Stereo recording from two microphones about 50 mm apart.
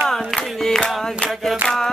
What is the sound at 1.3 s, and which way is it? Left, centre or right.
Mantra, centre.